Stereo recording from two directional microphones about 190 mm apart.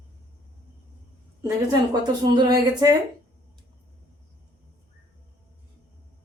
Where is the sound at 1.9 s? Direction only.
20° right (ahead or behind).